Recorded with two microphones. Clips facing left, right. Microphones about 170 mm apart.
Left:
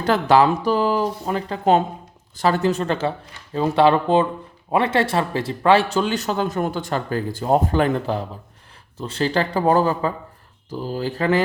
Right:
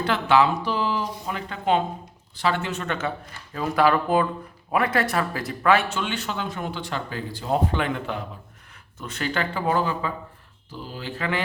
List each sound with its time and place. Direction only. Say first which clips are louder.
0.0 s speech: left 4 dB; 40° left (ahead or behind)